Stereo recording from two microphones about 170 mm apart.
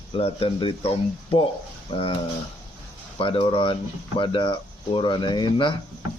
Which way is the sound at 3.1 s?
30° left (ahead or behind).